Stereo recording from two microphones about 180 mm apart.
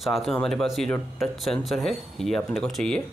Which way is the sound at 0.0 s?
Centre (ahead or behind).